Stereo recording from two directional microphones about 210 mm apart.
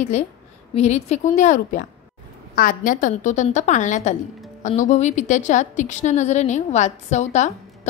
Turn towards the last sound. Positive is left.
turn(degrees=35)  # may be behind; listen again after turning